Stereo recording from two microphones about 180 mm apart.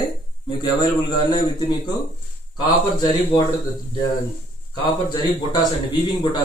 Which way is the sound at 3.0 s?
25° left (ahead or behind).